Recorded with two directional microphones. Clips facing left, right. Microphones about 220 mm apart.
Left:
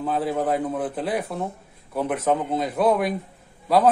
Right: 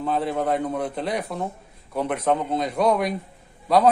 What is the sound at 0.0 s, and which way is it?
A man's voice, 5° left (ahead or behind).